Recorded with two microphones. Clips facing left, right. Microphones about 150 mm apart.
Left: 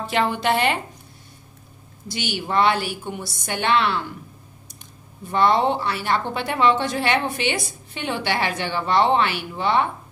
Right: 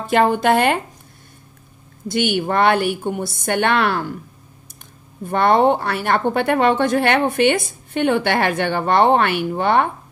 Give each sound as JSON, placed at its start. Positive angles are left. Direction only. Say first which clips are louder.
{"t": 0.0, "sound": "a woman's voice", "louder": "right 6 dB", "side_deg": -50}
{"t": 2.0, "sound": "a woman's voice", "louder": "right 8 dB", "side_deg": -55}
{"t": 5.2, "sound": "a woman's voice", "louder": "right 4 dB", "side_deg": -55}